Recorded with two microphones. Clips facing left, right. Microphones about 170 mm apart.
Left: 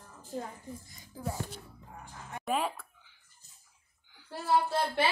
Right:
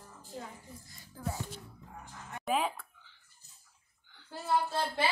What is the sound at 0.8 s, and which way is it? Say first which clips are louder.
Speech: left 4 dB; 20° left (ahead or behind).